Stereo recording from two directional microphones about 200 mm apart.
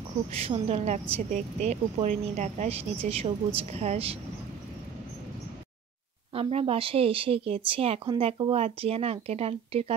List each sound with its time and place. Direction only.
0.3 s a woman's voice: 30° right (ahead or behind)
6.3 s speech: 30° right (ahead or behind)